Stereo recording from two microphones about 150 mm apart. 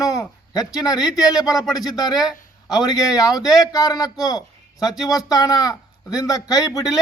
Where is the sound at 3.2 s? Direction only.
25° left (ahead or behind).